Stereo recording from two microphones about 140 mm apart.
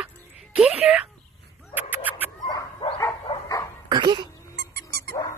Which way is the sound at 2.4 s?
35° left (ahead or behind).